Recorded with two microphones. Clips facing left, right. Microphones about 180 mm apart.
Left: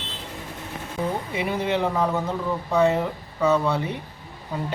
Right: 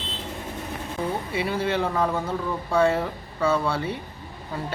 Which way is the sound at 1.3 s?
20° left (ahead or behind).